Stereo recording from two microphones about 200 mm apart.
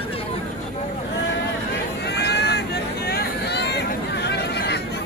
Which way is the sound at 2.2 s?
55° left (ahead or behind).